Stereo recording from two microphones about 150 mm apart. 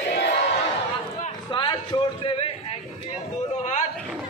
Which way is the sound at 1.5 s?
30° left (ahead or behind).